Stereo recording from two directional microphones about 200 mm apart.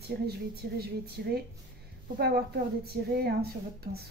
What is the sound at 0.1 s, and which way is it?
A woman's voice, 50° right (ahead or behind).